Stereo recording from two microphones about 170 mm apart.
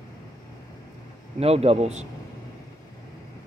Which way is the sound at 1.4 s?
35° right (ahead or behind).